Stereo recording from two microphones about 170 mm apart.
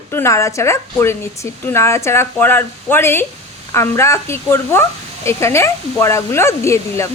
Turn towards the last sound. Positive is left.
turn(degrees=15)  # may be behind; listen again after turning